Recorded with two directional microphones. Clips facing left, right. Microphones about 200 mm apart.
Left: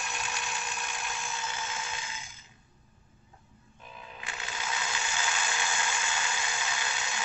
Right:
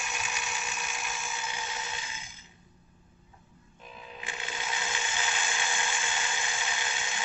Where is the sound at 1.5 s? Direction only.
15° right (ahead or behind).